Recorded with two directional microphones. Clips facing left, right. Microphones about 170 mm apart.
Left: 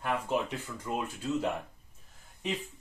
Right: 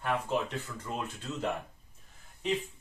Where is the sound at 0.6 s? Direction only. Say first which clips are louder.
Left 3 dB; 10° left (ahead or behind).